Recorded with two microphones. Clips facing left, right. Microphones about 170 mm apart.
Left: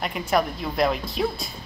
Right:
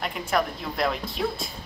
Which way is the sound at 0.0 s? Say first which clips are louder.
Left 3 dB; 5° left (ahead or behind).